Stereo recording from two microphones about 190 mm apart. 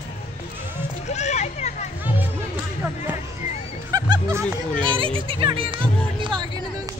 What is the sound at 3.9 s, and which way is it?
Music, 15° right (ahead or behind).